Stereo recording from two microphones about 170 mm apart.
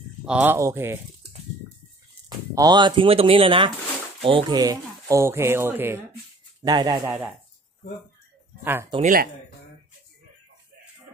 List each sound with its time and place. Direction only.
0.2 s speech: 5° right (ahead or behind)
2.2 s speech: 20° right (ahead or behind)
6.6 s speech: 25° right (ahead or behind)
9.0 s speech: 60° right (ahead or behind)